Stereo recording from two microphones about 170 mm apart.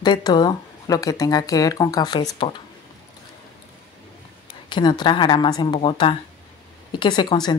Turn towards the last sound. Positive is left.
turn(degrees=25)  # may be behind; listen again after turning